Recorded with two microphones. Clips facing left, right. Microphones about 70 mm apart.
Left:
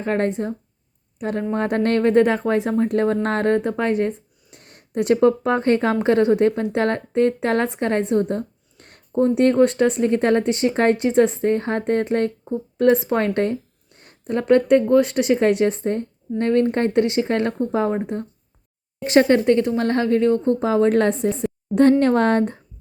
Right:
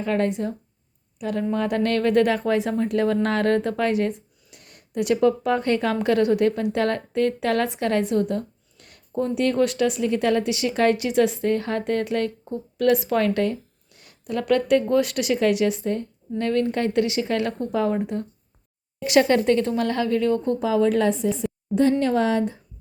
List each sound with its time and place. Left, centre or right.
0.0 s speech: left
4.5 s a woman's voice: left